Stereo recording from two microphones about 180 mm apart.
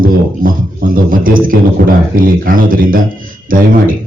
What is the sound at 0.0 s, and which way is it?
A man's voice, 50° right (ahead or behind).